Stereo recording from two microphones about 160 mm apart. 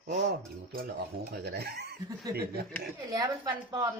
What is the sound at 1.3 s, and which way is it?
Speech, 90° right.